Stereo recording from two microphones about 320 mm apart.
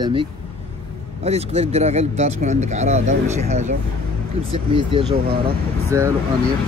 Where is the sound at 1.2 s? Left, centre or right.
Centre.